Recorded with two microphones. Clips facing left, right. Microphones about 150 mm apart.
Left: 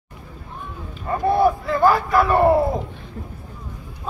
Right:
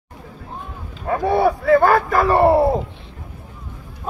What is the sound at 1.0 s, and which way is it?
Speech, 85° right.